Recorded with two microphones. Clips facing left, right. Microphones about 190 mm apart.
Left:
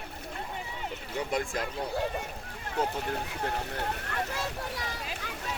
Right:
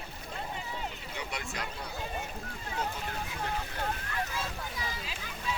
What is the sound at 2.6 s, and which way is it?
Boat, 65° left (ahead or behind).